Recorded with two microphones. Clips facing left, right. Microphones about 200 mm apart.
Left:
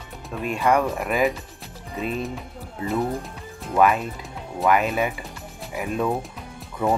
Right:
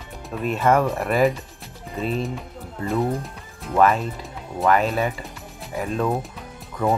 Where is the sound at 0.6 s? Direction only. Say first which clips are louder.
Right 1 dB; centre (ahead or behind).